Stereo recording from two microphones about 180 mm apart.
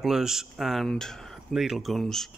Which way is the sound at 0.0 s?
Centre (ahead or behind).